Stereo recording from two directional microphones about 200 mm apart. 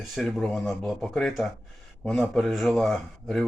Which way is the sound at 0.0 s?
Centre (ahead or behind).